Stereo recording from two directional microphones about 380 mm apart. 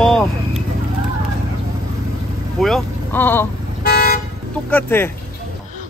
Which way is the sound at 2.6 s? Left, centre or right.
Centre.